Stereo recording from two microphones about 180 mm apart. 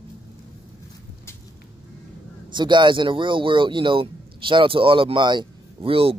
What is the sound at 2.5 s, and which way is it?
Speech, 25° right (ahead or behind).